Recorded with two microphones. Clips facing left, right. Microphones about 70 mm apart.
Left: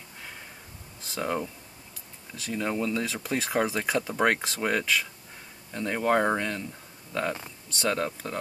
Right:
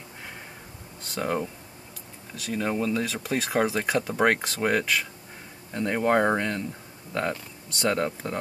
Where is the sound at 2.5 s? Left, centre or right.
Centre.